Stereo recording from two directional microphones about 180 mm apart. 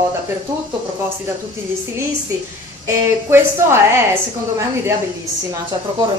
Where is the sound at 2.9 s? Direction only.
15° right (ahead or behind).